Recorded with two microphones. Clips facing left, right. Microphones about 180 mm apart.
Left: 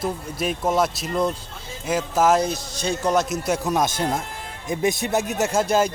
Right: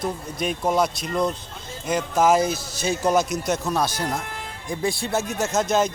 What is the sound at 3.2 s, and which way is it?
Speech, 5° left (ahead or behind).